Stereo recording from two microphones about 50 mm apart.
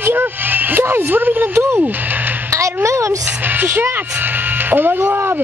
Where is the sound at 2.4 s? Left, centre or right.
Right.